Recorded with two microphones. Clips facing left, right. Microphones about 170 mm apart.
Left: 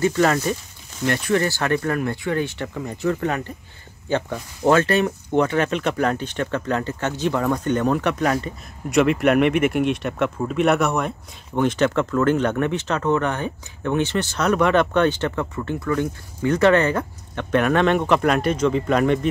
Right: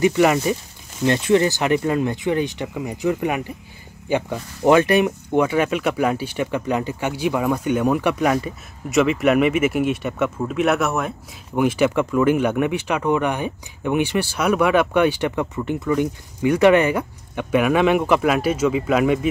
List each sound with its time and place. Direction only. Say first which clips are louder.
0.0 s speech: right 2 dB; 15° right (ahead or behind)